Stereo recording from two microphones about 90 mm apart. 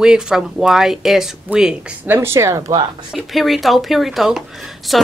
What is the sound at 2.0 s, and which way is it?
Speech, 30° right (ahead or behind).